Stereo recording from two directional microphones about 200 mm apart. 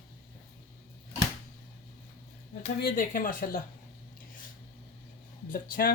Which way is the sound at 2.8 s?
45° left (ahead or behind).